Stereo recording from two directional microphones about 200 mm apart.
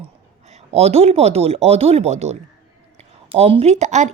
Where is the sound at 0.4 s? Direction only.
35° right (ahead or behind).